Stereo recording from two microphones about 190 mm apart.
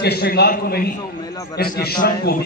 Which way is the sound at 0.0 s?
55° left (ahead or behind).